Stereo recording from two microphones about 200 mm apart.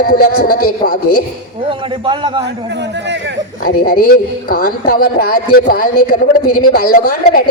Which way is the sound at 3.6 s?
45° left (ahead or behind).